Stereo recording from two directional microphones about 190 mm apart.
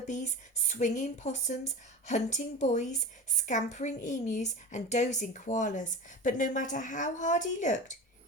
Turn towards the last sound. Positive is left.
turn(degrees=40)  # may be behind; listen again after turning